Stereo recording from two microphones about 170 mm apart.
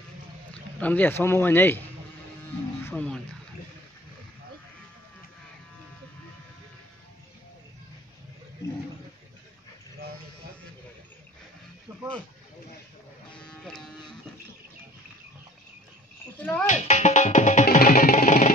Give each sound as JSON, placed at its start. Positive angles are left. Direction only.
{"t": 0.7, "sound": "speech", "side_deg": 10}
{"t": 2.8, "sound": "speech", "side_deg": 10}
{"t": 13.3, "sound": "music", "side_deg": 5}
{"t": 16.3, "sound": "a sound", "side_deg": 10}
{"t": 16.6, "sound": "music", "side_deg": 45}